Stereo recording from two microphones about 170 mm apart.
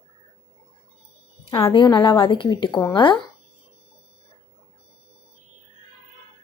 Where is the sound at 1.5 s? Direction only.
30° left (ahead or behind).